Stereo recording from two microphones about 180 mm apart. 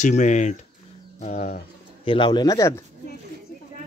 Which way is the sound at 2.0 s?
30° left (ahead or behind).